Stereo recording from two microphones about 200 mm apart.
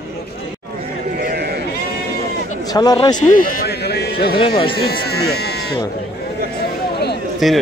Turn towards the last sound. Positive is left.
turn(degrees=0)  # may be behind; listen again after turning